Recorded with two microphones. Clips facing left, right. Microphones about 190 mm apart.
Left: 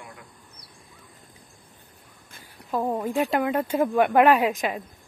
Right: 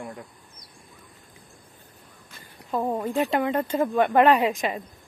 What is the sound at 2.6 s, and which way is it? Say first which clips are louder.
Speech: even; centre (ahead or behind).